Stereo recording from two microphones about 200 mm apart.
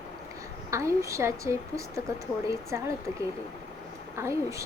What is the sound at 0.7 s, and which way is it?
A woman's voice, 15° right (ahead or behind).